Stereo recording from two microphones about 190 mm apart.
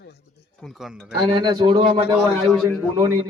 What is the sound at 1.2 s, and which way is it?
Speech, 25° right (ahead or behind).